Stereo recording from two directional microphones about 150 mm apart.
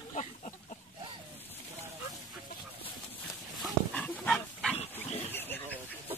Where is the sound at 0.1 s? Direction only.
55° left (ahead or behind).